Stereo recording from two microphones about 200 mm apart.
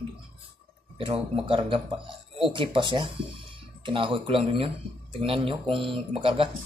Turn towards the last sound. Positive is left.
turn(degrees=-25)  # may be behind; listen again after turning